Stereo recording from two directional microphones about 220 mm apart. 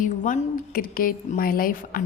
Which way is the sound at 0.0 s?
35° left (ahead or behind).